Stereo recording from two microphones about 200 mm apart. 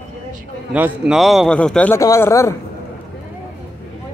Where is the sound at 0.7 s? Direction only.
5° right (ahead or behind); by 2.6 s 15° left (ahead or behind).